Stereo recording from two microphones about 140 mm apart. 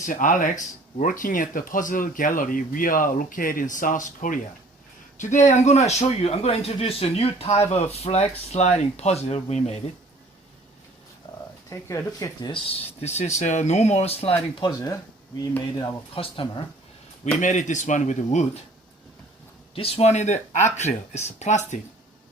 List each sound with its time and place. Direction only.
0.0 s speech: 70° left (ahead or behind)
1.2 s speech: 75° left (ahead or behind); by 9.8 s 50° left (ahead or behind)
11.3 s purr: 30° left (ahead or behind)
11.7 s speech: 20° left (ahead or behind)
12.5 s speech: 45° left (ahead or behind)
14.6 s speech: 25° left (ahead or behind)
15.8 s speech: 40° left (ahead or behind)
17.4 s speech: 60° left (ahead or behind)
19.7 s speech: 45° left (ahead or behind)